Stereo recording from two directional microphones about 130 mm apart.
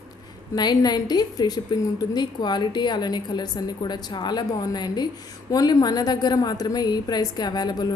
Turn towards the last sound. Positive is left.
turn(degrees=30)  # may be behind; listen again after turning